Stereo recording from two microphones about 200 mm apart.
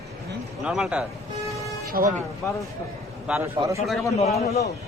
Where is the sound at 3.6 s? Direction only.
20° right (ahead or behind).